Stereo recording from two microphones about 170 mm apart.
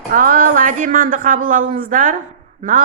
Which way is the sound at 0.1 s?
55° right (ahead or behind).